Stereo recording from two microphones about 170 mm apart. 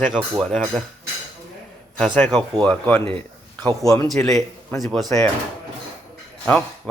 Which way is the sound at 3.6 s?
20° right (ahead or behind).